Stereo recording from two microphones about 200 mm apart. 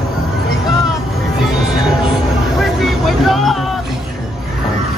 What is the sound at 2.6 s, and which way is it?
Speech, centre (ahead or behind).